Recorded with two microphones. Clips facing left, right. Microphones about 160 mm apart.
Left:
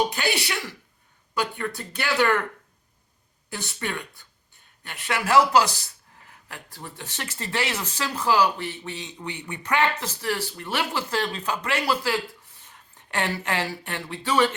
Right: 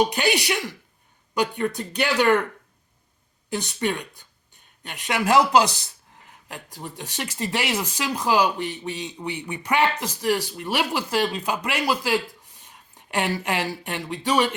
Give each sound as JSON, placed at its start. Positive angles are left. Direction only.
{"t": 0.1, "sound": "speech", "side_deg": -15}
{"t": 3.5, "sound": "speech", "side_deg": -20}